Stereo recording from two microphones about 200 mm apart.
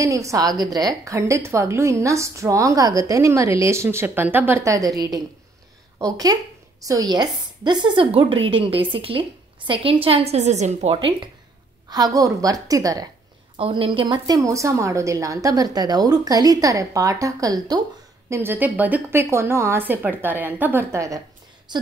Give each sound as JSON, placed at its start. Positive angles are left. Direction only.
{"t": 0.0, "sound": "a woman's voice", "side_deg": -15}
{"t": 6.8, "sound": "a woman's voice", "side_deg": -15}